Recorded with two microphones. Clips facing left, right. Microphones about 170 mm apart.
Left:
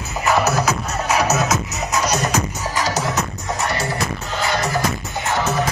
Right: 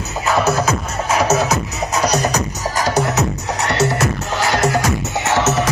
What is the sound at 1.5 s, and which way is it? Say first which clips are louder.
Music: right 2 dB; 35° right (ahead or behind).